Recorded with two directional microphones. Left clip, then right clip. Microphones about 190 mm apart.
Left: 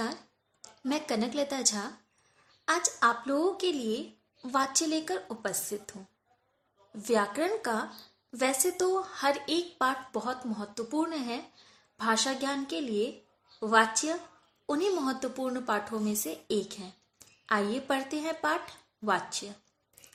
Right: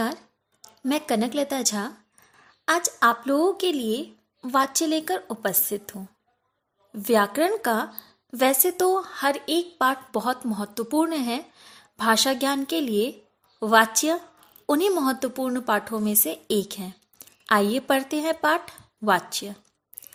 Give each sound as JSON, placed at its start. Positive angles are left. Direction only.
{"t": 0.9, "sound": "a woman's voice", "side_deg": -40}